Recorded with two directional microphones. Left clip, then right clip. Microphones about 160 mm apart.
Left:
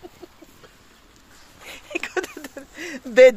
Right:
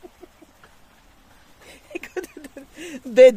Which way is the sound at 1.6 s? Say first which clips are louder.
Left 6 dB; 10° right (ahead or behind).